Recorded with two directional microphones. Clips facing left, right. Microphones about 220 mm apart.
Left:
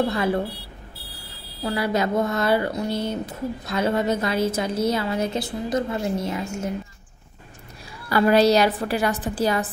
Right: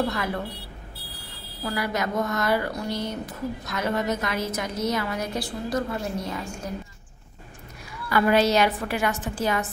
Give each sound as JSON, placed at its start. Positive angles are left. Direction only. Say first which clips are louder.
{"t": 0.1, "sound": "speech", "louder": "left 6 dB", "side_deg": 30}
{"t": 1.6, "sound": "speech", "louder": "left 4 dB", "side_deg": 30}
{"t": 8.1, "sound": "a woman's voice", "louder": "left 4 dB", "side_deg": 35}